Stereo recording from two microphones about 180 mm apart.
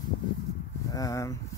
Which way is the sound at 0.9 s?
20° left (ahead or behind).